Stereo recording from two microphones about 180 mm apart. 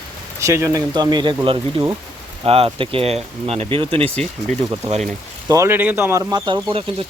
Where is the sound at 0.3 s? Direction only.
15° right (ahead or behind).